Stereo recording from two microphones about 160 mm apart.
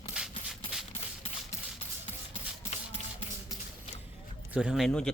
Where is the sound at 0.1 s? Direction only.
5° right (ahead or behind).